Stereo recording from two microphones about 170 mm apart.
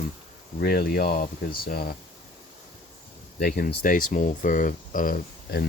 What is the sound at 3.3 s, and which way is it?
Speech, 60° left (ahead or behind).